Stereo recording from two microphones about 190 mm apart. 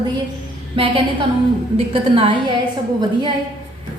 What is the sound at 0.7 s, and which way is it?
A woman's voice, 30° right (ahead or behind).